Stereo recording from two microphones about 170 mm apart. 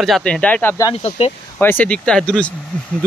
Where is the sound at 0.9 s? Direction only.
35° left (ahead or behind).